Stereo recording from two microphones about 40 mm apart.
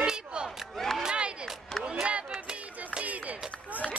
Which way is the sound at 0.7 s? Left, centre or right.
Centre.